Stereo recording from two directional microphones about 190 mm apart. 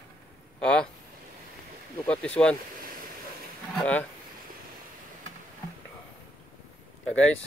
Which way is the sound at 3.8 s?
5° left (ahead or behind).